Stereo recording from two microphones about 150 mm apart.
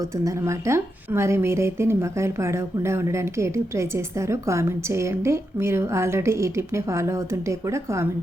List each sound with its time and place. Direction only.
0.3 s a woman's voice: 20° right (ahead or behind)